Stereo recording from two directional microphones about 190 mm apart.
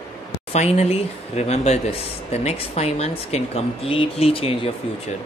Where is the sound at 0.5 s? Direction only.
35° left (ahead or behind).